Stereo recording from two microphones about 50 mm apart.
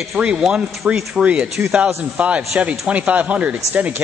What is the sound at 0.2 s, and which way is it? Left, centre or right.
Speech, centre.